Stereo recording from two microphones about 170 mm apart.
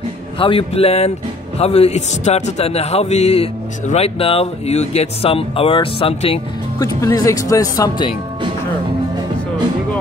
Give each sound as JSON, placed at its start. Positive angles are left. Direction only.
{"t": 0.4, "sound": "speech", "side_deg": 35}
{"t": 6.8, "sound": "speech", "side_deg": 20}